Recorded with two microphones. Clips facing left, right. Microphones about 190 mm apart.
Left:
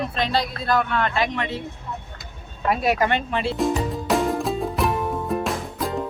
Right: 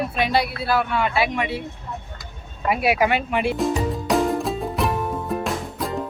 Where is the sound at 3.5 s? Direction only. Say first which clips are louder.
Even; centre (ahead or behind).